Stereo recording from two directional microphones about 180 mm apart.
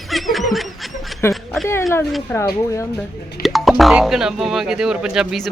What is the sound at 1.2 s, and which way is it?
A woman's voice, 15° left (ahead or behind).